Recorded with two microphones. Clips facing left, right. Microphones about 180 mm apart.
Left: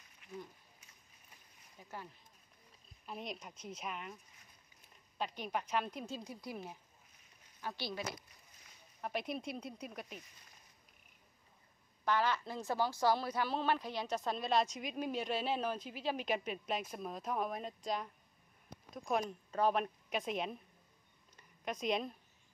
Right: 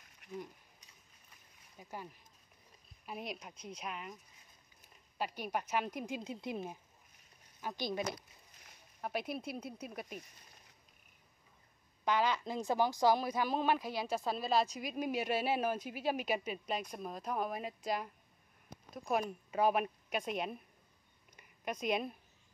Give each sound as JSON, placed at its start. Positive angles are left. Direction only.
{"t": 1.8, "sound": "speech", "side_deg": -15}
{"t": 3.1, "sound": "a woman's voice", "side_deg": -5}
{"t": 9.0, "sound": "speech", "side_deg": -5}
{"t": 12.0, "sound": "speech", "side_deg": -15}
{"t": 21.4, "sound": "a sound", "side_deg": 0}